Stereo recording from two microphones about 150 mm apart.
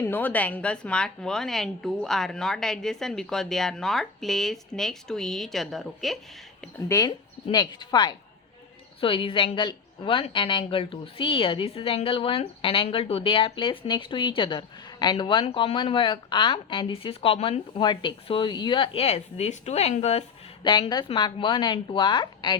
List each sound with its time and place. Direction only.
0.0 s a woman's voice: 10° left (ahead or behind)
6.8 s a woman's voice: 20° left (ahead or behind); by 20.2 s 45° left (ahead or behind)
20.7 s a woman's voice: 30° left (ahead or behind)